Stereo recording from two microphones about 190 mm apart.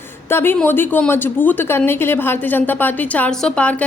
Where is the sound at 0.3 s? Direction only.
10° left (ahead or behind).